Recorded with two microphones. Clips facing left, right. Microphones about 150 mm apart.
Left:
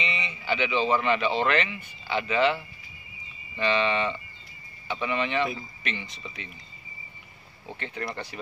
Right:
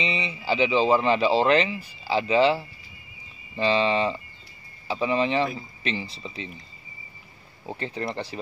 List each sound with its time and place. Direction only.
0.0 s speech: 30° right (ahead or behind)
7.6 s speech: 35° right (ahead or behind)